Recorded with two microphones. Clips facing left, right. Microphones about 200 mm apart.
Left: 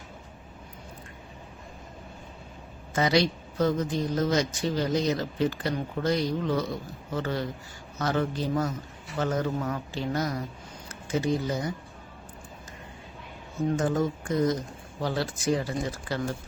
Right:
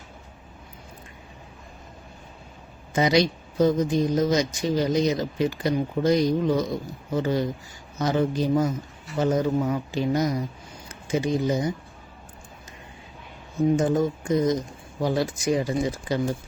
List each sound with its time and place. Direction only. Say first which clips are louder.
2.9 s speech: right 3 dB; 15° right (ahead or behind)
13.7 s speech: right 4 dB; 15° right (ahead or behind)